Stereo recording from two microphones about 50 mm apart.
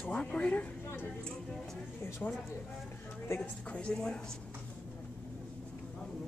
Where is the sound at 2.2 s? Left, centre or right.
Left.